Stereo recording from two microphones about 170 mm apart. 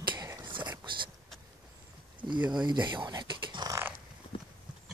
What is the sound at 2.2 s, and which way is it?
Speech, 25° right (ahead or behind).